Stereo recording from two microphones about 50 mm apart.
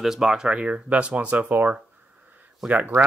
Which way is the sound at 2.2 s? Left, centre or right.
Right.